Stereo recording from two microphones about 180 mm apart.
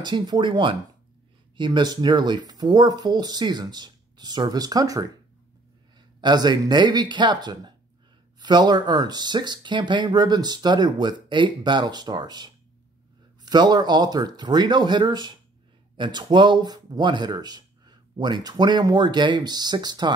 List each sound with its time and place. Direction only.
0.0 s speech: 25° right (ahead or behind)